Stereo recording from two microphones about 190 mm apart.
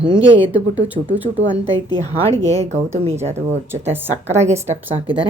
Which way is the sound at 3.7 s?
10° right (ahead or behind).